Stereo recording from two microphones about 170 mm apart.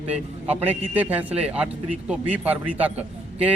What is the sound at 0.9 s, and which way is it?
Speech, 10° right (ahead or behind).